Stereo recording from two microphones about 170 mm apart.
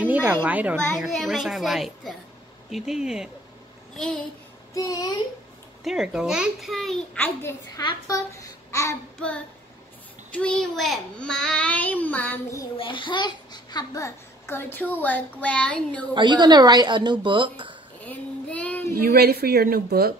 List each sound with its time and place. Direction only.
0.0 s a woman's voice: 10° right (ahead or behind)
0.8 s a child's voice: centre (ahead or behind)
4.7 s a child's voice: 20° left (ahead or behind)
5.9 s a child's voice: centre (ahead or behind)
7.4 s a child's voice: 20° left (ahead or behind)
10.3 s a child's voice: 5° left (ahead or behind)
12.7 s a child's voice: 30° left (ahead or behind); by 16.1 s 5° left (ahead or behind)
16.1 s speech: 25° right (ahead or behind)
18.0 s child singing: 10° left (ahead or behind)
18.9 s a woman's voice: 65° right (ahead or behind)